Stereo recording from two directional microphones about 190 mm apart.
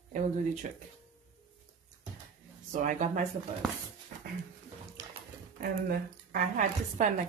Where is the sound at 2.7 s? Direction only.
40° right (ahead or behind).